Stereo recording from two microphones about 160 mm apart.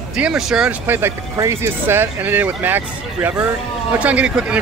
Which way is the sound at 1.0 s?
15° right (ahead or behind).